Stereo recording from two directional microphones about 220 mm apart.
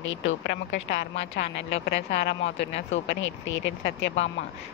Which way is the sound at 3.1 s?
60° left (ahead or behind).